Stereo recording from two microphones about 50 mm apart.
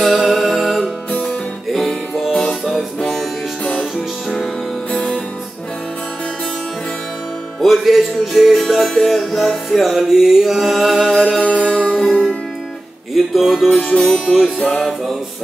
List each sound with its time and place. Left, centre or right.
0.0 s music: centre
7.6 s music: centre
11.7 s music: centre
13.1 s music: centre